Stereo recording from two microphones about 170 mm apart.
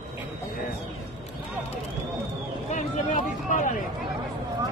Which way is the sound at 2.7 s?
45° left (ahead or behind).